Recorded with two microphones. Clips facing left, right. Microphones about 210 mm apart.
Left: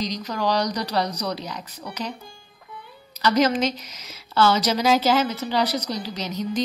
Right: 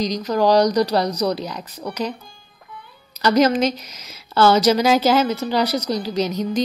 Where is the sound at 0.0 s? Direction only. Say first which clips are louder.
Right 7 dB; 45° right (ahead or behind).